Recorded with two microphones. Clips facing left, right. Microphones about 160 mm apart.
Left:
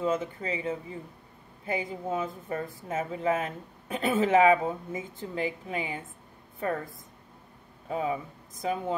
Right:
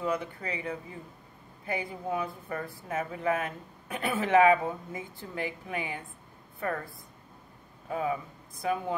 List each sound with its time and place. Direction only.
0.0 s speech: 25° left (ahead or behind)
7.9 s speech: 25° left (ahead or behind)